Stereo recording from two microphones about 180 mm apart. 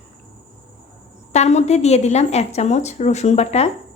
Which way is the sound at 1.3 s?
40° left (ahead or behind).